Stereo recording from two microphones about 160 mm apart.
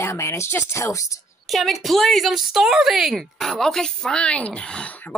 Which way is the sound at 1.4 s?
Centre (ahead or behind).